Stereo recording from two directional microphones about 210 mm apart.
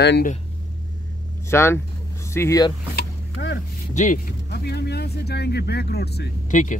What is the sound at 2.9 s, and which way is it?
Vehicle, 55° left (ahead or behind).